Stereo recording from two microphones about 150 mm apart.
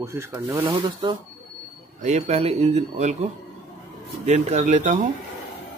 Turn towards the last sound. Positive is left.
turn(degrees=-55)  # may be behind; listen again after turning